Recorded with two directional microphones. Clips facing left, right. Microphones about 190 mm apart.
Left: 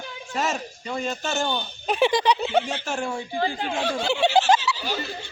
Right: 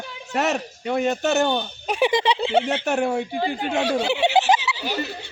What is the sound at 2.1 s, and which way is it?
Speech, 20° right (ahead or behind).